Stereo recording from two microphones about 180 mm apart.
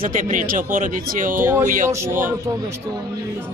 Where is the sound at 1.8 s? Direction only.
15° right (ahead or behind).